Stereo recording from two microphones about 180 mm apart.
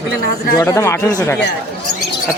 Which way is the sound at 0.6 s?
15° left (ahead or behind).